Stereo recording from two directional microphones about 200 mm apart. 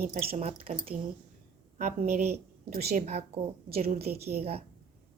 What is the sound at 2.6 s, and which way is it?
Speech, 50° right (ahead or behind).